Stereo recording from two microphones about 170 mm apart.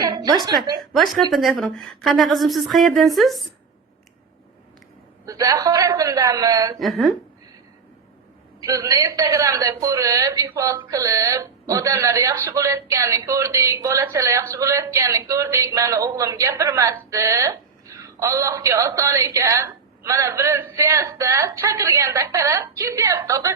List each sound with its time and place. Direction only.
0.0 s music: 25° right (ahead or behind)
0.4 s a woman's voice: 25° right (ahead or behind)
0.8 s a woman's voice: centre (ahead or behind)
5.2 s a woman's voice: 20° right (ahead or behind)
6.7 s a woman's voice: centre (ahead or behind)
8.6 s a woman's voice: 20° right (ahead or behind)